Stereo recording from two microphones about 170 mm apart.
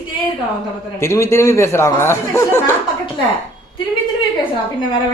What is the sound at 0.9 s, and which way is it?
A man's voice, 15° left (ahead or behind).